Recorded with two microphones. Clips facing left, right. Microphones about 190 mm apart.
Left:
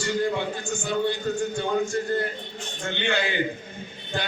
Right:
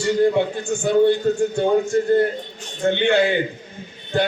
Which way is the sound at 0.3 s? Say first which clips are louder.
Right 8 dB; 60° right (ahead or behind).